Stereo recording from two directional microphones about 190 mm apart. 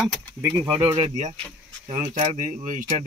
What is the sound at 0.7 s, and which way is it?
Speech, 25° right (ahead or behind).